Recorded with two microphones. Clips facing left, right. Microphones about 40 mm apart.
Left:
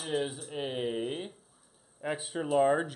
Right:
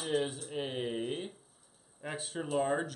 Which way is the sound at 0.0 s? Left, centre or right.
Centre.